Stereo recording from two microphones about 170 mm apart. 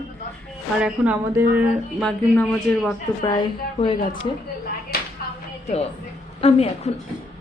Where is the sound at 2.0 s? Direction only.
5° left (ahead or behind).